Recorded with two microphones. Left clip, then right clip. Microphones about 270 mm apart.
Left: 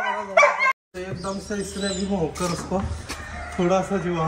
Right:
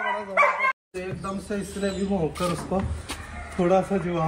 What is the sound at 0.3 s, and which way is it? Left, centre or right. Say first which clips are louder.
Speech: left 4 dB; left.